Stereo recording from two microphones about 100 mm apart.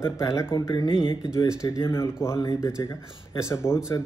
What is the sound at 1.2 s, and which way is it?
Speech, 30° left (ahead or behind).